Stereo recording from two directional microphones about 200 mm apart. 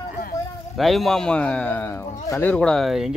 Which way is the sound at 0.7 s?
Centre (ahead or behind).